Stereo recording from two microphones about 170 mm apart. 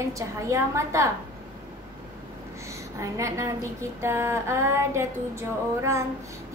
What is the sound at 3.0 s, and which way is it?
Child singing, 20° right (ahead or behind).